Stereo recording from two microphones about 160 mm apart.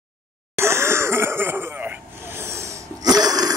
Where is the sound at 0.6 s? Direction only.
15° right (ahead or behind).